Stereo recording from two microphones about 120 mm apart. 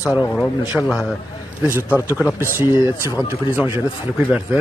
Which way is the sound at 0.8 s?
5° left (ahead or behind).